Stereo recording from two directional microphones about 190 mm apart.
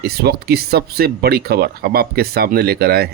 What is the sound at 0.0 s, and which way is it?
Speech, 55° right (ahead or behind).